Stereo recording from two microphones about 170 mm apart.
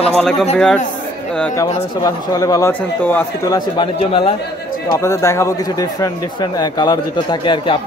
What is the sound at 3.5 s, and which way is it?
Speech, 30° left (ahead or behind).